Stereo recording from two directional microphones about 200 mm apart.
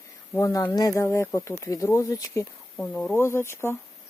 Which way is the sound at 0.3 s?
15° left (ahead or behind).